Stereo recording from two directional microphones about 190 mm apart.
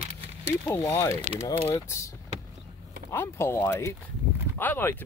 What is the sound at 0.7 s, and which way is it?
Speech, 15° left (ahead or behind).